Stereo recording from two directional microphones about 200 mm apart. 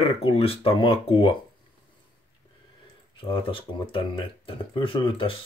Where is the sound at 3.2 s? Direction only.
25° left (ahead or behind).